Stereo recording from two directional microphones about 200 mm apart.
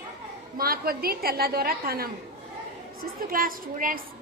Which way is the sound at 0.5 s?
50° right (ahead or behind).